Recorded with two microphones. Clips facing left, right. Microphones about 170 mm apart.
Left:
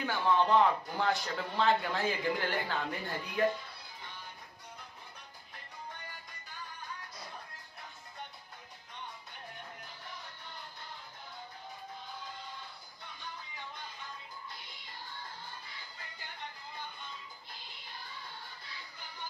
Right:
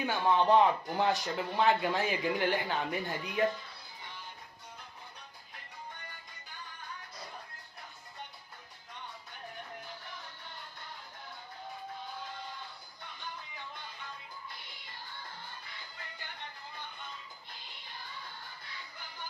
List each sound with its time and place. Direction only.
0.0 s speech: 20° right (ahead or behind)